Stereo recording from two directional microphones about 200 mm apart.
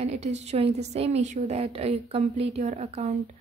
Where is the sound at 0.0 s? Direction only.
35° right (ahead or behind).